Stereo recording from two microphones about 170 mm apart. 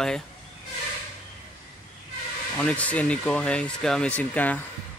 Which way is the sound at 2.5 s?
10° left (ahead or behind).